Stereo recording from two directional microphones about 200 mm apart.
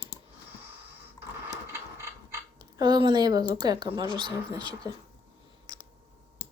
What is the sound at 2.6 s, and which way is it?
Speech, 20° right (ahead or behind).